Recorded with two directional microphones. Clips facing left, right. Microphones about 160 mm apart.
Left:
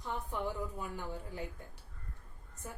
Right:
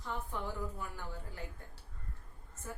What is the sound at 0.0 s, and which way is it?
A woman's voice, 15° left (ahead or behind).